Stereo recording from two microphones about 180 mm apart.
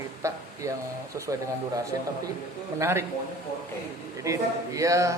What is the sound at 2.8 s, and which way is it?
Speech, 15° right (ahead or behind).